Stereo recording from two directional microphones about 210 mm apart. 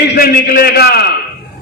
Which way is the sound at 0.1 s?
45° left (ahead or behind).